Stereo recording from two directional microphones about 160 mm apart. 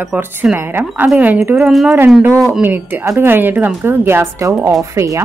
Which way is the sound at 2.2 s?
15° right (ahead or behind).